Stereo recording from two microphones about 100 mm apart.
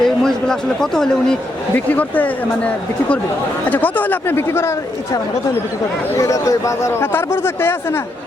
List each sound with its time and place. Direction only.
0.0 s a man's voice: 5° left (ahead or behind)
1.7 s a man's voice: 15° left (ahead or behind)
6.1 s a man's voice: 30° left (ahead or behind)